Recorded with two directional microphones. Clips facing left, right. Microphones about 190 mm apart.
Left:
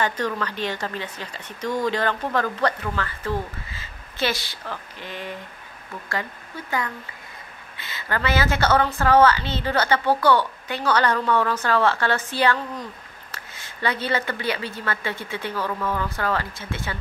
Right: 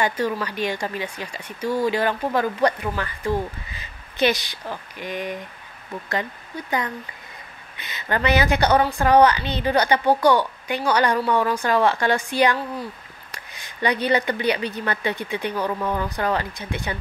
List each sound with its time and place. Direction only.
0.0 s speech: 10° right (ahead or behind)